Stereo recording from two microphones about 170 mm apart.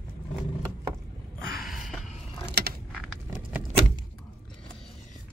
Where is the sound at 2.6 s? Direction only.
75° right (ahead or behind).